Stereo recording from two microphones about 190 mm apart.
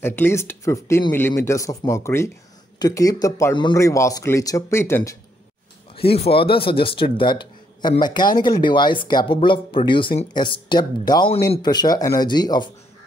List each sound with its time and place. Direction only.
0.0 s speech: 10° left (ahead or behind)
5.9 s speech: 30° left (ahead or behind)